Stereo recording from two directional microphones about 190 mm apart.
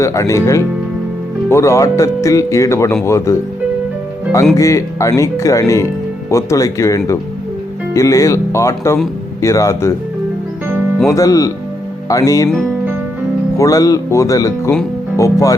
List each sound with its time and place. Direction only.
0.0 s speech: 15° left (ahead or behind)
4.5 s speech: 15° left (ahead or behind)
11.1 s speech: 15° left (ahead or behind)
12.5 s music: 5° right (ahead or behind)
13.6 s speech: 15° left (ahead or behind)